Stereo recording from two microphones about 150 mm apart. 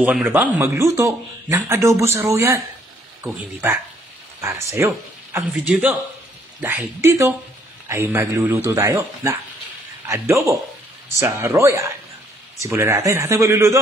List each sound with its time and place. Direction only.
0.0 s a man's voice: 10° right (ahead or behind)